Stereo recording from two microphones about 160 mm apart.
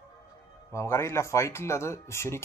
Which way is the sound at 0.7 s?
15° left (ahead or behind).